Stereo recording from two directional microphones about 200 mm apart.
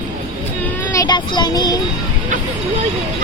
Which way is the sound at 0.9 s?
20° left (ahead or behind).